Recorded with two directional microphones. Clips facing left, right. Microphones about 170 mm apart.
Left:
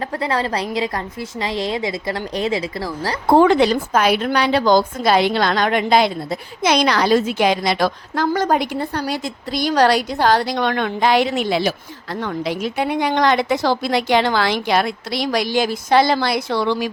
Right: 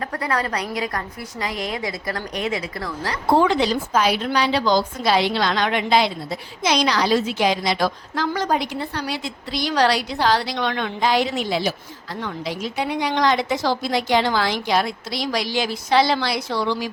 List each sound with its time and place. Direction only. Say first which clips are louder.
0.0 s a woman's voice: left 3 dB; 25° left (ahead or behind)
3.2 s a woman's voice: left 5 dB; 55° left (ahead or behind)